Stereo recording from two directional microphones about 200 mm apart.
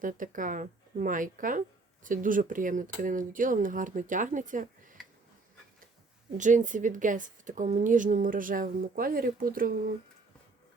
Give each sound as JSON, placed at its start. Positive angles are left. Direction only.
{"t": 0.0, "sound": "a woman's voice", "side_deg": -40}
{"t": 6.3, "sound": "a woman's voice", "side_deg": -40}